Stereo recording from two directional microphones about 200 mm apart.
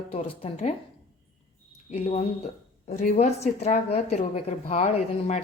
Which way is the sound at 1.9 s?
30° left (ahead or behind).